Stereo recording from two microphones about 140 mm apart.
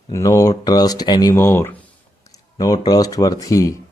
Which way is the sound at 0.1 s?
20° left (ahead or behind).